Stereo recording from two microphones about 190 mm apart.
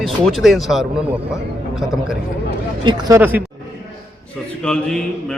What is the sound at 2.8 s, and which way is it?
Speech, 20° right (ahead or behind).